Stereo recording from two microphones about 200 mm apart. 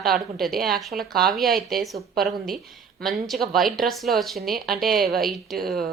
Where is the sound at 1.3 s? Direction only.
Centre (ahead or behind).